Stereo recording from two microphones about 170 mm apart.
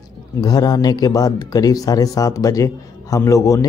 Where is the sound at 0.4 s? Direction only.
20° left (ahead or behind).